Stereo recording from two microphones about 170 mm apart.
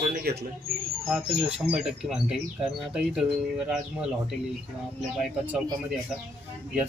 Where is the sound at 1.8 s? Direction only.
5° right (ahead or behind).